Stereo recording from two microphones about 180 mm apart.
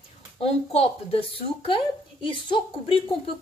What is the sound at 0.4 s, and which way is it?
A woman's voice, 35° left (ahead or behind).